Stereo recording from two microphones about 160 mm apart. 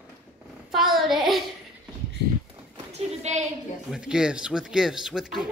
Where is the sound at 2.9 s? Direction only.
40° right (ahead or behind).